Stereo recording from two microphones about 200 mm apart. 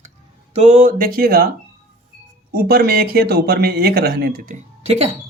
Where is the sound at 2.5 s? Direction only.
50° right (ahead or behind); by 5.1 s 30° right (ahead or behind).